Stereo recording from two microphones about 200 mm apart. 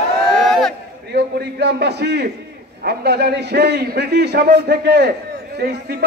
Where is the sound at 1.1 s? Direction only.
55° right (ahead or behind).